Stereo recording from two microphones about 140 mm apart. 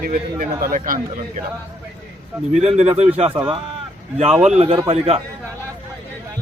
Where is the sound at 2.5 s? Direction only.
55° right (ahead or behind).